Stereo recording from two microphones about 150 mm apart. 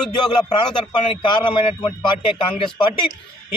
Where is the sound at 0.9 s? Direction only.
30° left (ahead or behind).